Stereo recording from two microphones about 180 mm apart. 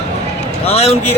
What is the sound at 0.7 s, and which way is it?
Speech, 35° left (ahead or behind).